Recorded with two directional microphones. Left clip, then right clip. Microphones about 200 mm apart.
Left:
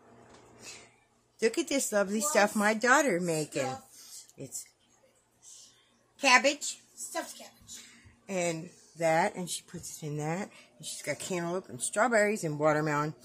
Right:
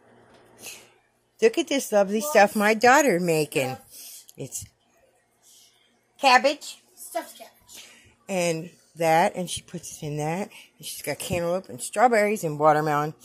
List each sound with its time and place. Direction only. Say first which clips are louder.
1.4 s speech: right 7 dB; 15° right (ahead or behind)
4.3 s a sound: right 9 dB; 25° right (ahead or behind)
6.1 s speech: right 5 dB; 25° right (ahead or behind)
8.3 s speech: right 7 dB; 30° right (ahead or behind); by 13.1 s 10° right (ahead or behind)